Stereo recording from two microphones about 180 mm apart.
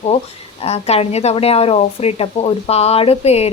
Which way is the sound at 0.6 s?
35° left (ahead or behind).